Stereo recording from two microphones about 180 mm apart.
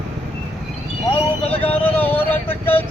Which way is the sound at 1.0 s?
30° left (ahead or behind).